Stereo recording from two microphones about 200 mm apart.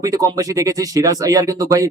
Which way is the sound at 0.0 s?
15° right (ahead or behind).